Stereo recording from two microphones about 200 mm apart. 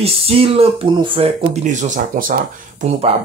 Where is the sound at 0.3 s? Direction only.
30° right (ahead or behind).